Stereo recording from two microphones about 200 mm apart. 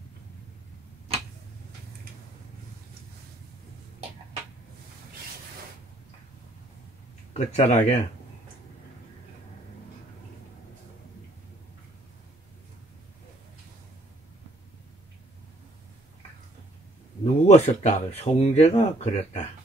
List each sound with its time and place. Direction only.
7.3 s speech: 35° left (ahead or behind)
17.2 s speech: 30° left (ahead or behind)